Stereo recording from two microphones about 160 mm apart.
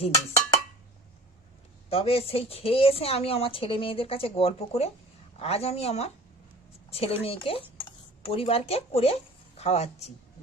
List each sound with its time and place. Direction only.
1.9 s a woman's voice: 40° left (ahead or behind)